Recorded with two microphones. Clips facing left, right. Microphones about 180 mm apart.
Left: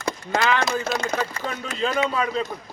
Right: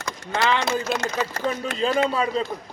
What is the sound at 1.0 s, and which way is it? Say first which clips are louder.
Speech: even; 75° right (ahead or behind).